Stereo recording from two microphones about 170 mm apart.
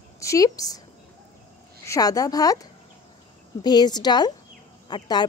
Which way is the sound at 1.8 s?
20° left (ahead or behind).